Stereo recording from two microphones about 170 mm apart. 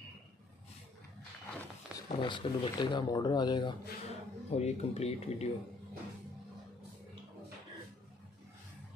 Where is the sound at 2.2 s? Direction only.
30° left (ahead or behind).